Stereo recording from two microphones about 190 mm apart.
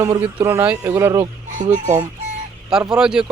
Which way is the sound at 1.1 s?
25° right (ahead or behind).